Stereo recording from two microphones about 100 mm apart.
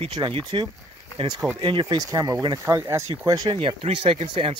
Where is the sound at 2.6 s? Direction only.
25° right (ahead or behind).